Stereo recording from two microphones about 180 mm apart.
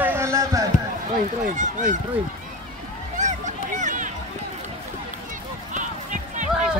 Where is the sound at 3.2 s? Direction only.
40° right (ahead or behind).